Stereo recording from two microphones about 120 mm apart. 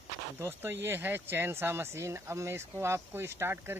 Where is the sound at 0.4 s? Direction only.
20° right (ahead or behind).